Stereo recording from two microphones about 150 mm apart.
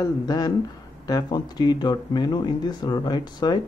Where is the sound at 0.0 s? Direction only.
25° left (ahead or behind).